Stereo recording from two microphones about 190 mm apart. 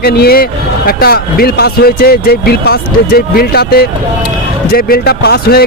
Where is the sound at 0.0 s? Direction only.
55° left (ahead or behind).